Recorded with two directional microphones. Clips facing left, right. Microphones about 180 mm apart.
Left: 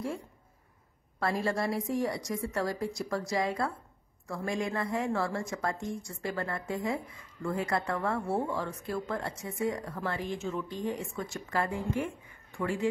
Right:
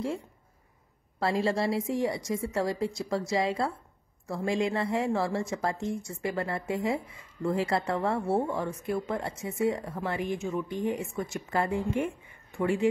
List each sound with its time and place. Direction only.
1.2 s speech: 25° right (ahead or behind)